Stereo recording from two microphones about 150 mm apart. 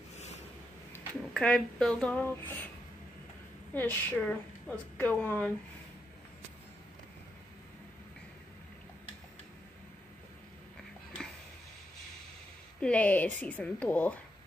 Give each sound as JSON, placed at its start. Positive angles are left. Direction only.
{"t": 0.1, "sound": "a sound", "side_deg": 50}
{"t": 0.9, "sound": "speech", "side_deg": 5}
{"t": 3.7, "sound": "speech", "side_deg": 10}
{"t": 12.8, "sound": "speech", "side_deg": 10}